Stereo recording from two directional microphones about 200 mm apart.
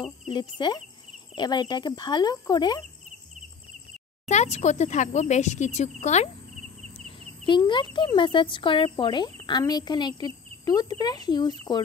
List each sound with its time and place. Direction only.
0.3 s speech: 20° left (ahead or behind)
4.3 s speech: 35° left (ahead or behind)
7.4 s speech: 25° left (ahead or behind)